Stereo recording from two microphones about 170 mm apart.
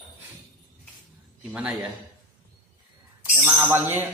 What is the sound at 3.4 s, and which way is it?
Speech, 10° right (ahead or behind).